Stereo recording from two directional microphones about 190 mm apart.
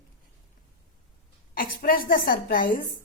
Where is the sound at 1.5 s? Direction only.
50° left (ahead or behind).